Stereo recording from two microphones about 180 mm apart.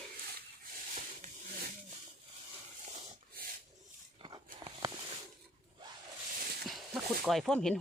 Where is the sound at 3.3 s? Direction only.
55° right (ahead or behind).